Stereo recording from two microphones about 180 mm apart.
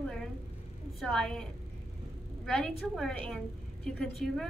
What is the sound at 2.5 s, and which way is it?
A woman's voice, 5° left (ahead or behind).